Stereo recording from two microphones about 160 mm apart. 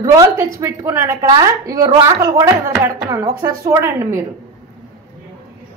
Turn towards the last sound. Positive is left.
turn(degrees=-15)  # may be behind; listen again after turning